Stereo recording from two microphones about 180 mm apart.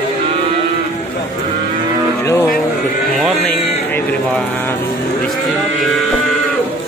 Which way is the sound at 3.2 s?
5° left (ahead or behind).